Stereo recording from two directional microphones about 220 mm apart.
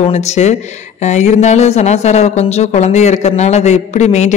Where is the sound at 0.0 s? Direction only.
30° left (ahead or behind).